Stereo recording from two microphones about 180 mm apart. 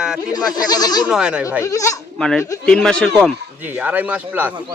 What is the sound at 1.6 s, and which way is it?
Speech, 20° left (ahead or behind).